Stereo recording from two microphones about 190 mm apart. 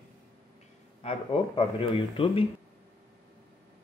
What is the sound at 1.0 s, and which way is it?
Speech, 25° left (ahead or behind).